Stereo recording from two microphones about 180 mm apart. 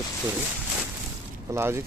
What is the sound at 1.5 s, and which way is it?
Speech, 15° right (ahead or behind).